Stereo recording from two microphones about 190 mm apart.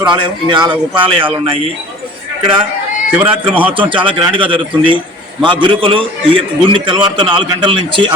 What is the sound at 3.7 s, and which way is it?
A man's voice, 25° right (ahead or behind).